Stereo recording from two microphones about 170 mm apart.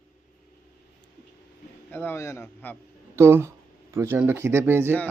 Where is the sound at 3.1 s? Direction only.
15° right (ahead or behind).